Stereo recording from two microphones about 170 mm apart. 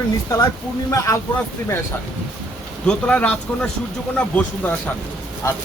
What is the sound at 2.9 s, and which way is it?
Speech, 5° left (ahead or behind).